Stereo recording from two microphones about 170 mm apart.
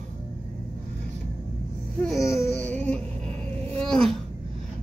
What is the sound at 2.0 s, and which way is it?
Music, centre (ahead or behind).